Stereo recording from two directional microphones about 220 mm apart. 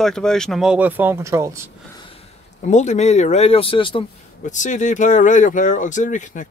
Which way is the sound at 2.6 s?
35° left (ahead or behind).